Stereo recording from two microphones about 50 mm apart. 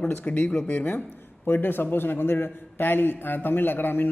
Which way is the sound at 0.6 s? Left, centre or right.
Left.